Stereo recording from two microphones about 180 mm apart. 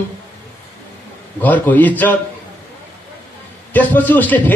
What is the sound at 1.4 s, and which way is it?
Speech, 10° left (ahead or behind).